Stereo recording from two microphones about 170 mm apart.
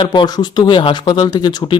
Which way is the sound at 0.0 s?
30° left (ahead or behind).